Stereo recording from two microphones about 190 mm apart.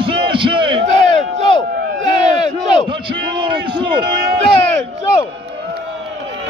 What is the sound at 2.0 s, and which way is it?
Battle cry, 40° right (ahead or behind).